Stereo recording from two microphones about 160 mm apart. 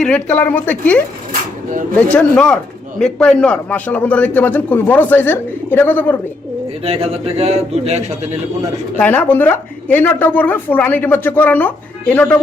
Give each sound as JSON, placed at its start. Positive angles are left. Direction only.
{"t": 0.0, "sound": "speech", "side_deg": 10}
{"t": 6.8, "sound": "a man's voice", "side_deg": -40}
{"t": 9.0, "sound": "speech", "side_deg": 10}